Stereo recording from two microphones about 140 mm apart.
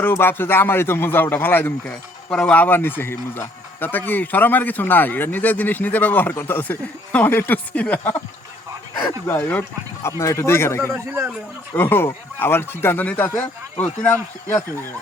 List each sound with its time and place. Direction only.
0.0 s a man's voice: 15° left (ahead or behind)
9.2 s a man's voice: 15° left (ahead or behind)